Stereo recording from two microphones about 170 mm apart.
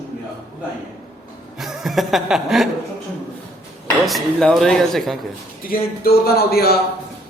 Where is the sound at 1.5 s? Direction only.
Centre (ahead or behind).